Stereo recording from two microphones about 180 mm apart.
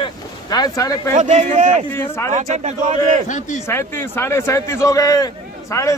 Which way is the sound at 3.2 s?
45° left (ahead or behind).